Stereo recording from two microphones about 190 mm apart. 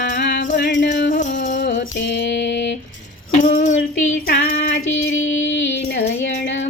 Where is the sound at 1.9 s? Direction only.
65° left (ahead or behind).